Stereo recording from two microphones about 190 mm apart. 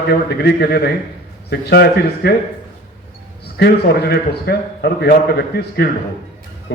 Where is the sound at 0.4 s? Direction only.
55° left (ahead or behind).